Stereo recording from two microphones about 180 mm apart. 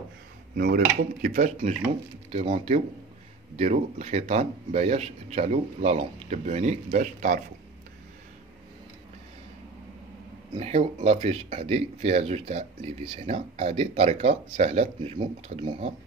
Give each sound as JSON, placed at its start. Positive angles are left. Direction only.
{"t": 0.6, "sound": "speech", "side_deg": -55}
{"t": 10.6, "sound": "speech", "side_deg": -40}